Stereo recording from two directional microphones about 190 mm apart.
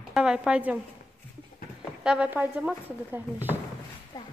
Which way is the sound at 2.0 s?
5° right (ahead or behind).